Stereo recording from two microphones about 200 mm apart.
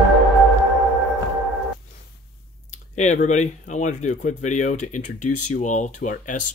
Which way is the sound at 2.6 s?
35° left (ahead or behind).